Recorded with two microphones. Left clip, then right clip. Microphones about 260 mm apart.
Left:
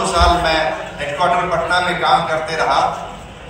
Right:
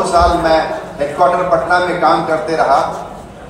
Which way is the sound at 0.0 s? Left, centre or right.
Right.